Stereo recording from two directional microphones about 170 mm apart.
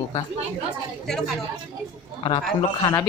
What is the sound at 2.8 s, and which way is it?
Speech, 20° left (ahead or behind).